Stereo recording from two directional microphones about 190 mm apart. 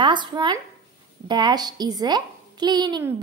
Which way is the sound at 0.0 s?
25° right (ahead or behind).